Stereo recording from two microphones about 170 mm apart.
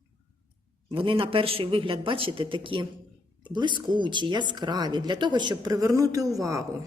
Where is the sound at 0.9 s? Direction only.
30° right (ahead or behind).